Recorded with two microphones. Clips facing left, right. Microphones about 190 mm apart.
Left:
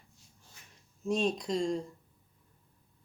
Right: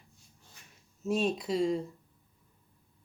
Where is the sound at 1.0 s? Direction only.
5° right (ahead or behind).